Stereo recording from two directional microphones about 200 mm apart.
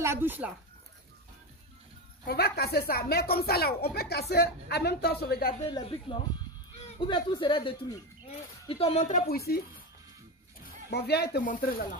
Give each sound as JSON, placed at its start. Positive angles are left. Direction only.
{"t": 0.0, "sound": "speech", "side_deg": -10}
{"t": 2.2, "sound": "a woman's voice", "side_deg": 50}
{"t": 5.7, "sound": "speech", "side_deg": 25}
{"t": 10.9, "sound": "a woman's voice", "side_deg": 55}